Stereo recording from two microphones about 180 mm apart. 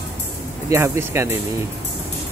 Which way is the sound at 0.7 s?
15° right (ahead or behind).